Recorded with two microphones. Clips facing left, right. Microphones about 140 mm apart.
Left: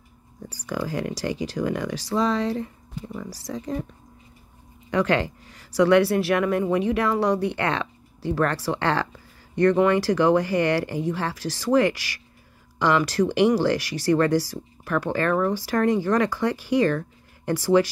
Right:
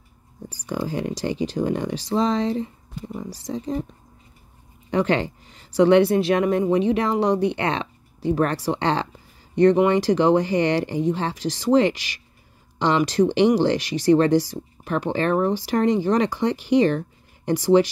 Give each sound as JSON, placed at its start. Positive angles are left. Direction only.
{"t": 0.5, "sound": "speech", "side_deg": -20}
{"t": 4.9, "sound": "speech", "side_deg": -20}